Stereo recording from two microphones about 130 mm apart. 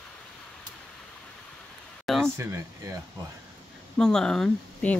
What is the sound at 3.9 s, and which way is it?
Speech, 5° left (ahead or behind).